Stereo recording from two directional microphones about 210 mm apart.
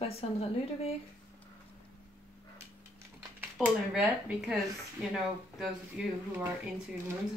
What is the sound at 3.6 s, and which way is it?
Speech, 5° right (ahead or behind).